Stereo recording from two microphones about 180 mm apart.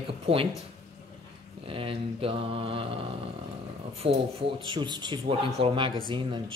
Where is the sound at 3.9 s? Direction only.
35° right (ahead or behind).